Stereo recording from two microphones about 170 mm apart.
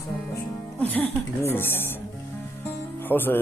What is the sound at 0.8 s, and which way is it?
Speech, 10° left (ahead or behind).